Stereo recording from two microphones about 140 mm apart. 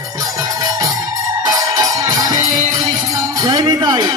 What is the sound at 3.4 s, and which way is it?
Music, 25° right (ahead or behind).